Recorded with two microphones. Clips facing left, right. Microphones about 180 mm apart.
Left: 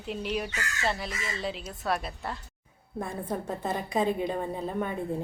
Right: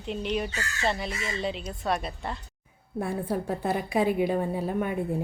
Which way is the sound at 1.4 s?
Centre (ahead or behind).